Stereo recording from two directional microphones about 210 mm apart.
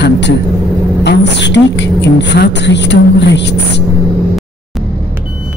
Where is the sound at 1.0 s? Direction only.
55° left (ahead or behind).